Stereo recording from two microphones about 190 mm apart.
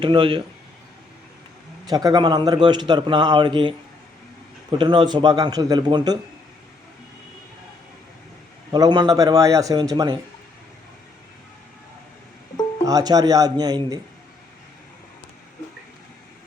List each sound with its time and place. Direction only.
0.0 s a man's voice: 25° right (ahead or behind)
1.9 s a man's voice: 20° right (ahead or behind)
4.8 s a man's voice: 25° right (ahead or behind)
8.7 s a man's voice: 20° right (ahead or behind)
12.8 s a man's voice: 20° right (ahead or behind)